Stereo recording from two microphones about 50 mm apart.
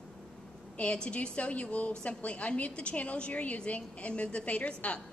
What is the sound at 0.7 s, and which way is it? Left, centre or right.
A woman's voice, left.